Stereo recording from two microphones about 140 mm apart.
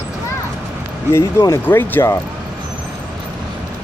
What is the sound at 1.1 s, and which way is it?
Speech, 20° left (ahead or behind).